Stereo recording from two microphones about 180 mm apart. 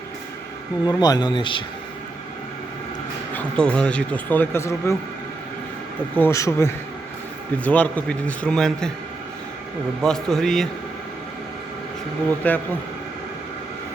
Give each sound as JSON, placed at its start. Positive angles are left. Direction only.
{"t": 0.9, "sound": "speech", "side_deg": 20}
{"t": 3.3, "sound": "speech", "side_deg": 5}
{"t": 6.1, "sound": "speech", "side_deg": 15}
{"t": 10.0, "sound": "a man's voice", "side_deg": 5}
{"t": 12.4, "sound": "speech", "side_deg": 10}